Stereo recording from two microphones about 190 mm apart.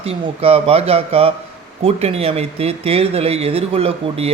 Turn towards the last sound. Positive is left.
turn(degrees=-30)  # may be behind; listen again after turning